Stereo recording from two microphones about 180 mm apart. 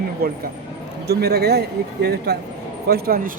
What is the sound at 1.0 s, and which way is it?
Speech, 65° right (ahead or behind).